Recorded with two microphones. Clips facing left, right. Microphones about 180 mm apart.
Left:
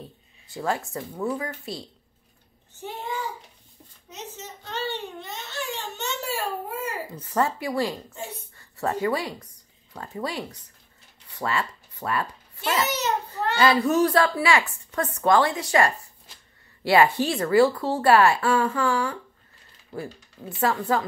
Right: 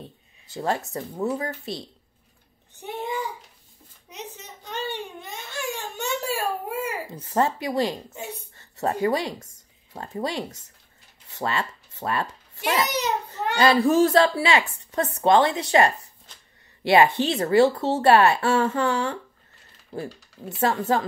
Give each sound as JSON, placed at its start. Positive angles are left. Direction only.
{"t": 0.5, "sound": "a child's voice", "side_deg": -20}
{"t": 2.8, "sound": "a child's voice", "side_deg": -20}
{"t": 4.1, "sound": "a sound", "side_deg": -15}
{"t": 7.2, "sound": "a woman's voice", "side_deg": -25}
{"t": 9.9, "sound": "a child's voice", "side_deg": -25}
{"t": 20.6, "sound": "a child's voice", "side_deg": -20}